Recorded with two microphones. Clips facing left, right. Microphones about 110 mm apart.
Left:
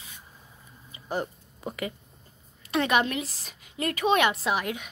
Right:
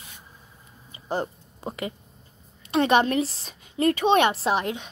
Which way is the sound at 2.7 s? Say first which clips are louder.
Right 5 dB; 30° right (ahead or behind).